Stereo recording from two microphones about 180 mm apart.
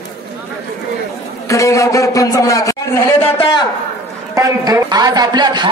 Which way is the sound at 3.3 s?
30° left (ahead or behind).